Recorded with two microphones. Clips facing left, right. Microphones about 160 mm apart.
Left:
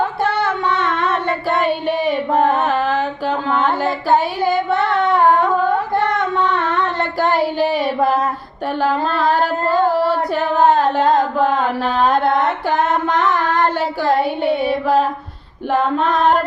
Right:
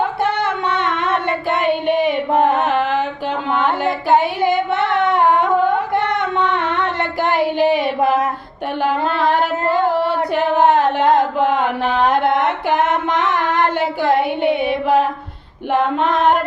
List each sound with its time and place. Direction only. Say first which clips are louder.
0.2 s child singing: even; 20° right (ahead or behind)
8.8 s singing: even; 20° right (ahead or behind)
15.7 s male singing: even; 20° right (ahead or behind)